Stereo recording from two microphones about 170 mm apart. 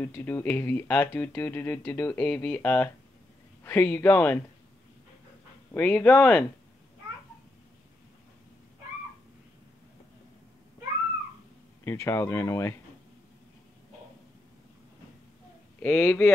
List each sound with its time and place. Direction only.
0.0 s speech: 10° left (ahead or behind)
5.7 s speech: 10° left (ahead or behind)
11.8 s speech: 15° left (ahead or behind)
15.8 s speech: 10° left (ahead or behind)